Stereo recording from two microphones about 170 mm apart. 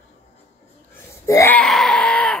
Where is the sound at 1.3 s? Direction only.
15° left (ahead or behind).